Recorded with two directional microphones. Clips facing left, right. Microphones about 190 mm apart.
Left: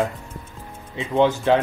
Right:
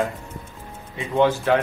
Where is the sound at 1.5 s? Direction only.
25° left (ahead or behind).